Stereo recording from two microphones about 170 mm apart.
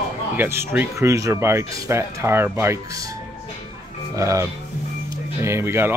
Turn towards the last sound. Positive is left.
turn(degrees=-15)  # may be behind; listen again after turning